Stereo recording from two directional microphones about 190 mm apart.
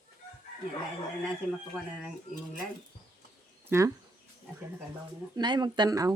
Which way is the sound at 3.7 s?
15° right (ahead or behind).